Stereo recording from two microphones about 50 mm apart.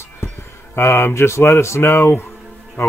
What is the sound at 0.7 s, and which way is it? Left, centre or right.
Speech, left.